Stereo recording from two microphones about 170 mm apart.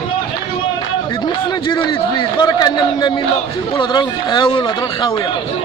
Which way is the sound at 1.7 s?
30° left (ahead or behind).